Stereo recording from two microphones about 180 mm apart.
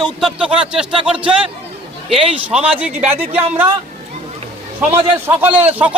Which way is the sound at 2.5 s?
10° right (ahead or behind).